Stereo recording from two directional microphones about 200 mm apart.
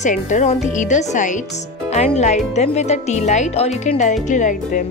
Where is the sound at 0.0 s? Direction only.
35° left (ahead or behind).